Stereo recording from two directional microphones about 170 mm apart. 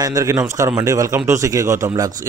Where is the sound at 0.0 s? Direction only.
20° right (ahead or behind).